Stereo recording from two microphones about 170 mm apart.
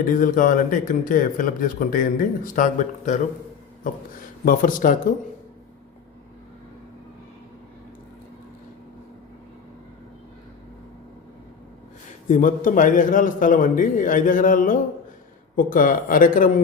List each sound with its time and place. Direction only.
0.0 s speech: 50° left (ahead or behind)
4.4 s speech: 50° left (ahead or behind)
12.3 s speech: 50° left (ahead or behind)